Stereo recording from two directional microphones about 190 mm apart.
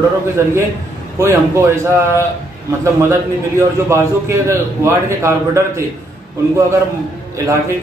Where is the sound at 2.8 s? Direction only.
15° right (ahead or behind).